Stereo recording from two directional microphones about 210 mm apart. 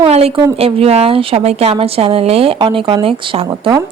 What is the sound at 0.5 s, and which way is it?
A woman's voice, 30° right (ahead or behind).